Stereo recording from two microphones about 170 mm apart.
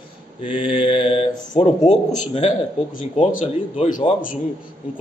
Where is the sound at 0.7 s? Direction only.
30° left (ahead or behind).